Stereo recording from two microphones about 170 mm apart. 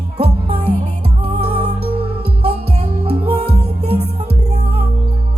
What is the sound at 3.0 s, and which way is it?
Music, 35° right (ahead or behind).